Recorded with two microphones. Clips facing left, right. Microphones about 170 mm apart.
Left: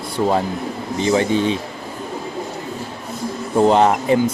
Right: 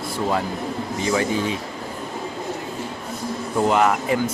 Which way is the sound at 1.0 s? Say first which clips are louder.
Left 5 dB; 25° left (ahead or behind).